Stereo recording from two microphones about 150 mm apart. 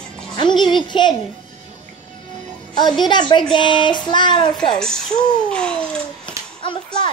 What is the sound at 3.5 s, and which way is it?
Child singing, 30° left (ahead or behind).